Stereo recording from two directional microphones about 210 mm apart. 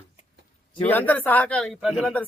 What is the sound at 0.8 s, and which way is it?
Speech, 10° left (ahead or behind).